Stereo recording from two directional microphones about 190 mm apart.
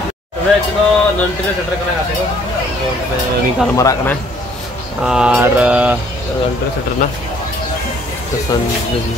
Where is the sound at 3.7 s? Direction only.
15° left (ahead or behind).